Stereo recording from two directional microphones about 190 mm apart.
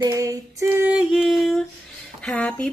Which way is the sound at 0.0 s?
15° right (ahead or behind).